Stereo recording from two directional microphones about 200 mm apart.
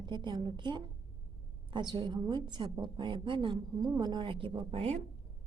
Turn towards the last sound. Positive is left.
turn(degrees=-30)  # may be behind; listen again after turning